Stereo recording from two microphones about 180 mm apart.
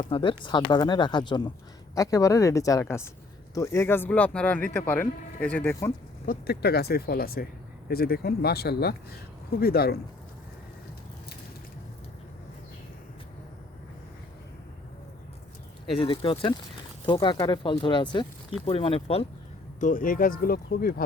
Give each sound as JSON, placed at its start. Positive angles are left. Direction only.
{"t": 0.0, "sound": "speech", "side_deg": 30}
{"t": 6.2, "sound": "speech", "side_deg": 60}
{"t": 16.0, "sound": "speech", "side_deg": 30}
{"t": 19.8, "sound": "speech", "side_deg": 50}